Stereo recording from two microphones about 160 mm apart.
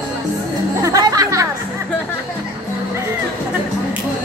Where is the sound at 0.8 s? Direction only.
20° right (ahead or behind).